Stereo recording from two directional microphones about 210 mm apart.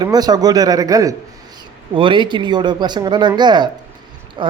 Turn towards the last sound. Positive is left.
turn(degrees=-25)  # may be behind; listen again after turning